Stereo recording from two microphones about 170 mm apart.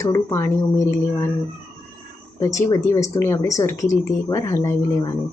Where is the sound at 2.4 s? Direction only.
20° left (ahead or behind).